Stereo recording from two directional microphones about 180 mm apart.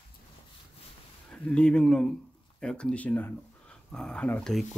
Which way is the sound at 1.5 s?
5° left (ahead or behind).